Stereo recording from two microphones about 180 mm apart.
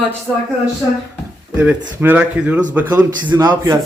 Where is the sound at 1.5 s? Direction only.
10° right (ahead or behind).